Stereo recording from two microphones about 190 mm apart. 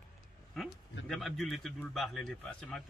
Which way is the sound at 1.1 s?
Centre (ahead or behind).